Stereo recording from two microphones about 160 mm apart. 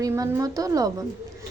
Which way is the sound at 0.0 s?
20° right (ahead or behind).